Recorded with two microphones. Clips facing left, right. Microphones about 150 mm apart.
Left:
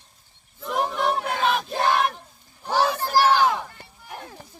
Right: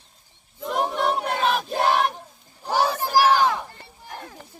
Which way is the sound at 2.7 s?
10° right (ahead or behind).